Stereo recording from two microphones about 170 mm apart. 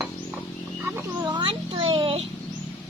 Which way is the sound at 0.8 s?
15° right (ahead or behind).